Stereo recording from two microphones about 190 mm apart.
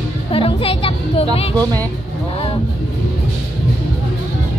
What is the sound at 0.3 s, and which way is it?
A woman's voice, 30° left (ahead or behind).